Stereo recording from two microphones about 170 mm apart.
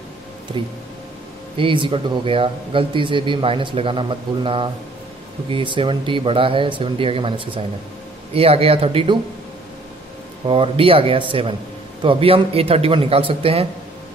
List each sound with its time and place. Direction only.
1.6 s a man's voice: 30° right (ahead or behind)
10.4 s speech: 30° right (ahead or behind)